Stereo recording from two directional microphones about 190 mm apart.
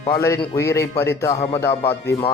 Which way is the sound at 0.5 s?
15° left (ahead or behind).